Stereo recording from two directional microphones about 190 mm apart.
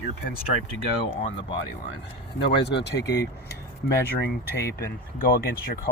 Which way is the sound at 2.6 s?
65° left (ahead or behind).